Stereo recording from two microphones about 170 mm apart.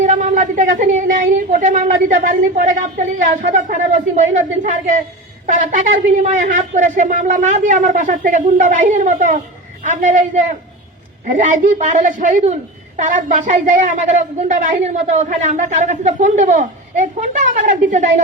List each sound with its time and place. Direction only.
0.0 s a woman's voice: 50° right (ahead or behind)